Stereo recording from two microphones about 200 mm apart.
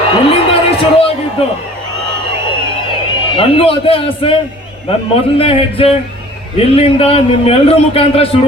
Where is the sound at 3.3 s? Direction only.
25° left (ahead or behind).